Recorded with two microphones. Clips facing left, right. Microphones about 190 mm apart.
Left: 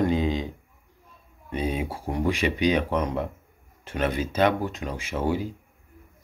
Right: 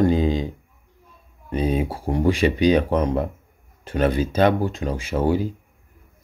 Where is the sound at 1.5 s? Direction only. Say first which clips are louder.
Right 6 dB; 40° right (ahead or behind).